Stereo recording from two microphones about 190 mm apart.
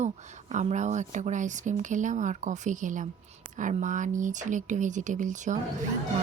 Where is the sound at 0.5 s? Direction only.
40° right (ahead or behind).